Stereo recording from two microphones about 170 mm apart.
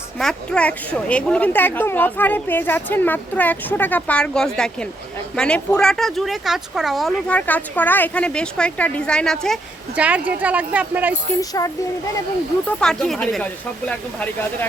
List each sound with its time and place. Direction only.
0.2 s a woman's voice: 5° left (ahead or behind)
9.9 s speech: 10° right (ahead or behind)
11.3 s speech: 20° left (ahead or behind)
12.8 s a woman's voice: 5° left (ahead or behind)